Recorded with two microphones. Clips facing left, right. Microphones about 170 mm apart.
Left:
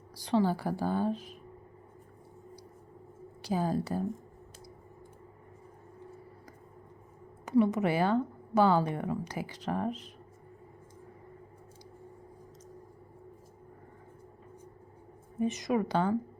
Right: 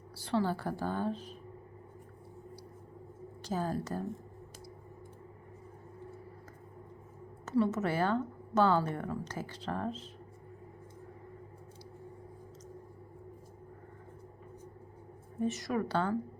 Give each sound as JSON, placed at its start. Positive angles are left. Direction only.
{"t": 0.1, "sound": "a woman's voice", "side_deg": 15}
{"t": 3.4, "sound": "a woman's voice", "side_deg": 10}
{"t": 7.4, "sound": "a woman's voice", "side_deg": 15}
{"t": 15.4, "sound": "a woman's voice", "side_deg": 15}